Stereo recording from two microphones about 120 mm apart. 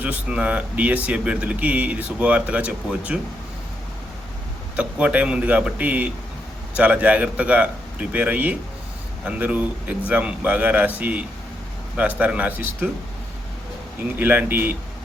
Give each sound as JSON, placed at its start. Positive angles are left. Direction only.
{"t": 0.0, "sound": "speech", "side_deg": -10}
{"t": 4.8, "sound": "speech", "side_deg": -10}
{"t": 14.2, "sound": "speech", "side_deg": -15}